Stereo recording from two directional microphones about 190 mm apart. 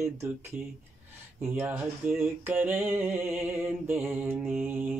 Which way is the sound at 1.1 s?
10° right (ahead or behind).